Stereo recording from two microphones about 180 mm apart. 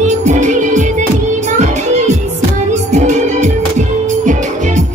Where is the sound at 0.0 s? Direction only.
40° right (ahead or behind).